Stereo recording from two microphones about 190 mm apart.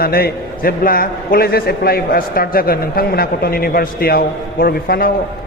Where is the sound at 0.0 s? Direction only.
55° left (ahead or behind).